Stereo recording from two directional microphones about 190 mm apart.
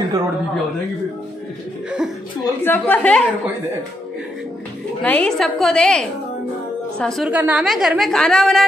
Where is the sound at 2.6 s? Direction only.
10° left (ahead or behind).